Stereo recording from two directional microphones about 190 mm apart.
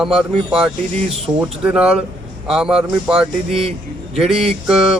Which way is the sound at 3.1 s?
30° right (ahead or behind).